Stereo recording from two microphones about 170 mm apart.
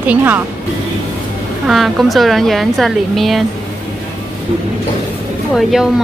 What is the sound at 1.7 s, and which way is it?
Speech, centre (ahead or behind).